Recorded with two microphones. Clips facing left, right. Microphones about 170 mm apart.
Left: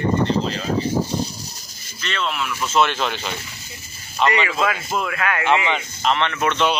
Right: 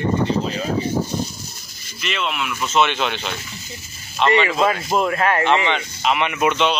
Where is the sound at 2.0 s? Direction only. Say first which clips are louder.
Right 1 dB; 5° right (ahead or behind).